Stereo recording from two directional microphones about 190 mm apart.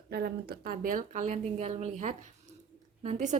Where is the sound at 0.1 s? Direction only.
55° right (ahead or behind).